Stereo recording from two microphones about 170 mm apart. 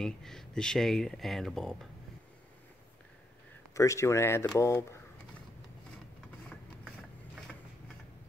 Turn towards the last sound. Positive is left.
turn(degrees=0)  # may be behind; listen again after turning